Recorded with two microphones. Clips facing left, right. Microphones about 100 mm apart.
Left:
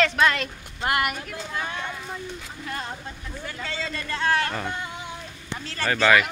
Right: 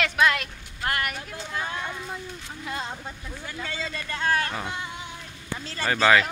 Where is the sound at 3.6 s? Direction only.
15° right (ahead or behind).